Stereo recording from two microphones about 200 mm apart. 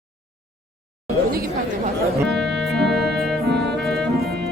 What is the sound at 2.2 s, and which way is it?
Music, centre (ahead or behind).